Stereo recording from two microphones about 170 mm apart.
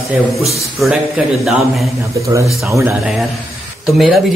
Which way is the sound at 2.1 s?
20° right (ahead or behind).